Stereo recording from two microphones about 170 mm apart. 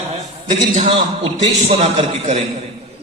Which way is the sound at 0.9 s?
30° right (ahead or behind).